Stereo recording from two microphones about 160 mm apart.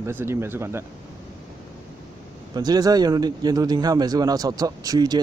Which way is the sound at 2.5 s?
25° right (ahead or behind).